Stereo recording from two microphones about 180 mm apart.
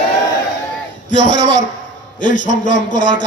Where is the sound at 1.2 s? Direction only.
45° left (ahead or behind).